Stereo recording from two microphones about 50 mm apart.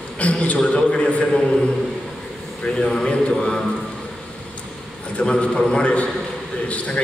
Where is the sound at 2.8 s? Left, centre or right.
Centre.